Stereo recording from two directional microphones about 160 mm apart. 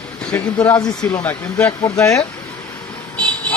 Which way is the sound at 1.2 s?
10° left (ahead or behind).